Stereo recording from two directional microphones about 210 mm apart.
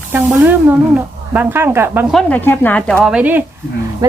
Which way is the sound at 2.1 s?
5° left (ahead or behind).